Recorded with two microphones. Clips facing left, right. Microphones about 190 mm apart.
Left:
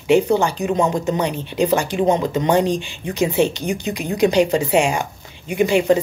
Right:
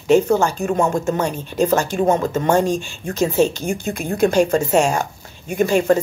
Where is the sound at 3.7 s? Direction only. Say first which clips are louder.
Even; 50° right (ahead or behind).